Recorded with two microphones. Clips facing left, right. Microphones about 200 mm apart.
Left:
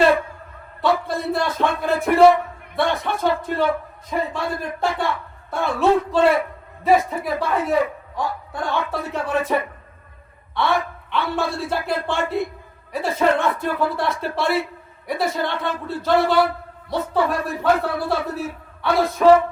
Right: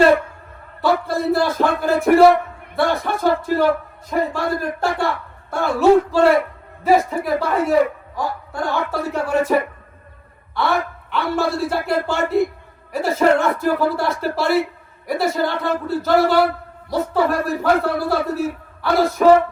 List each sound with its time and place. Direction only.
1.0 s a man's voice: centre (ahead or behind)